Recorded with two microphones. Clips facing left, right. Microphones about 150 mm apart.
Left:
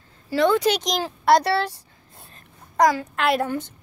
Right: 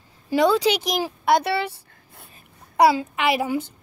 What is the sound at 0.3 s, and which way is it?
Speech, 15° right (ahead or behind).